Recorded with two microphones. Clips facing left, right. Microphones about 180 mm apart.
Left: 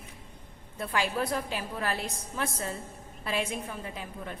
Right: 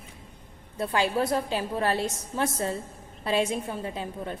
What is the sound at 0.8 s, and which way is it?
A woman's voice, 30° right (ahead or behind).